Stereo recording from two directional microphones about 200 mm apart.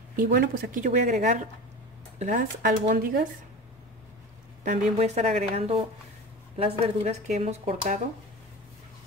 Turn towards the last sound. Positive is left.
turn(degrees=-30)  # may be behind; listen again after turning